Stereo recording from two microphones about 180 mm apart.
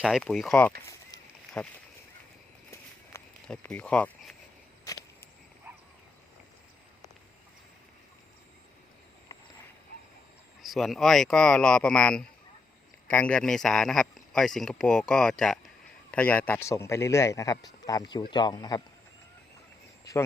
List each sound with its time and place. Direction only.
0.0 s a man's voice: centre (ahead or behind)
3.4 s speech: 5° left (ahead or behind)
4.9 s a sound: 20° left (ahead or behind)
5.7 s dog: 10° right (ahead or behind)
10.6 s a man's voice: centre (ahead or behind); by 18.8 s 20° left (ahead or behind)